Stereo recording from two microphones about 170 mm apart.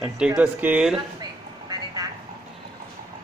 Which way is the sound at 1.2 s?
25° right (ahead or behind).